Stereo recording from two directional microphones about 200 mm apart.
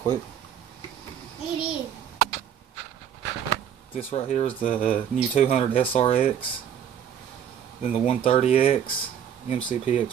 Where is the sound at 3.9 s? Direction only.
35° left (ahead or behind).